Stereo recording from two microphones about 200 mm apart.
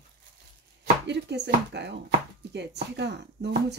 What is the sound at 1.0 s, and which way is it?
Speech, 60° right (ahead or behind).